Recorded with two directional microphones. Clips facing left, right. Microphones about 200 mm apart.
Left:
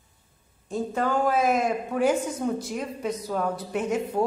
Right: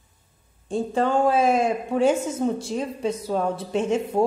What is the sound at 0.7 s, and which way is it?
A woman's voice, 30° right (ahead or behind).